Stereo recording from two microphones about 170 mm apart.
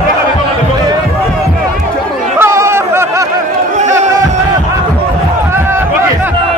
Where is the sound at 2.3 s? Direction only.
15° right (ahead or behind).